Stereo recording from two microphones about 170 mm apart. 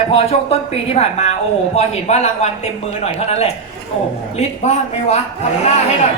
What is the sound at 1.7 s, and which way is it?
A woman's voice, 40° left (ahead or behind).